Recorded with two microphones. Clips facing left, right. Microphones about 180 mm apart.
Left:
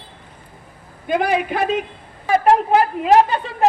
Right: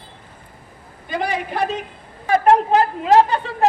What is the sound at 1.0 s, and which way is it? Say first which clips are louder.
Speech: left 5 dB; 55° left (ahead or behind).